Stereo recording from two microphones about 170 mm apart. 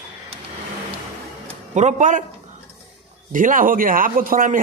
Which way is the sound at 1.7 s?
45° right (ahead or behind).